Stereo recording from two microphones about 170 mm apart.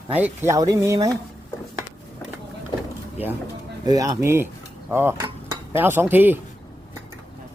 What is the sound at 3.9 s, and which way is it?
Speech, 20° right (ahead or behind).